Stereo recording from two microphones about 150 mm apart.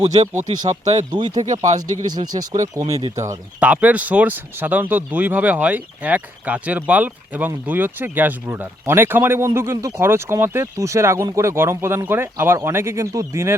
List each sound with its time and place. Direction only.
0.1 s speech: 40° right (ahead or behind)
1.1 s speech: 30° right (ahead or behind)
3.6 s speech: 10° right (ahead or behind)